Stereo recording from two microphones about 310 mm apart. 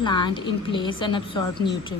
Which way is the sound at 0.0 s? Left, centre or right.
Centre.